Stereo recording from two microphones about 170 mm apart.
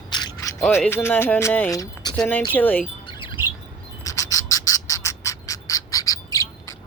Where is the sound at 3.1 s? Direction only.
30° left (ahead or behind).